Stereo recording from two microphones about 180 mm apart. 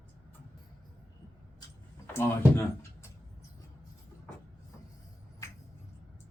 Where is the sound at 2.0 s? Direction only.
10° left (ahead or behind).